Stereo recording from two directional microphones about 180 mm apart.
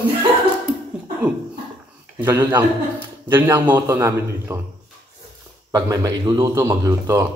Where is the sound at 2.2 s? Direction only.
15° right (ahead or behind).